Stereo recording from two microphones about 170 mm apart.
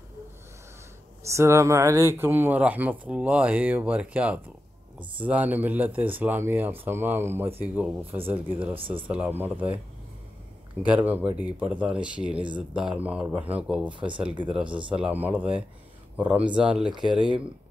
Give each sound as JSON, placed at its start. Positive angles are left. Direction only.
{"t": 1.2, "sound": "speech", "side_deg": -15}
{"t": 8.7, "sound": "speech", "side_deg": -30}
{"t": 9.0, "sound": "speech", "side_deg": -10}
{"t": 10.9, "sound": "speech", "side_deg": -10}
{"t": 13.9, "sound": "speech", "side_deg": -30}
{"t": 14.5, "sound": "speech", "side_deg": -5}